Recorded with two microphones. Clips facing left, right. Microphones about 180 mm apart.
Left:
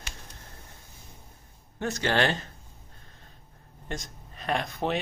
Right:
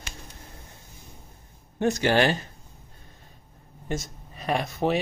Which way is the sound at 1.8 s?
15° right (ahead or behind).